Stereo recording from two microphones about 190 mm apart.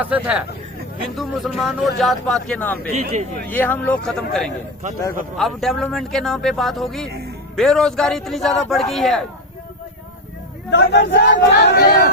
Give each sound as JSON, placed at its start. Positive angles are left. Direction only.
{"t": 0.0, "sound": "speech", "side_deg": -5}
{"t": 2.9, "sound": "speech", "side_deg": -40}
{"t": 3.5, "sound": "speech", "side_deg": 10}
{"t": 10.7, "sound": "speech", "side_deg": 65}